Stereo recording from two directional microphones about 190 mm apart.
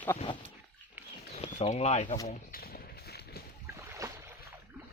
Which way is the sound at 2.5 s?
55° left (ahead or behind).